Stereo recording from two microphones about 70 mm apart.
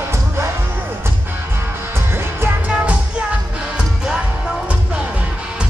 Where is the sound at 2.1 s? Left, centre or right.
Right.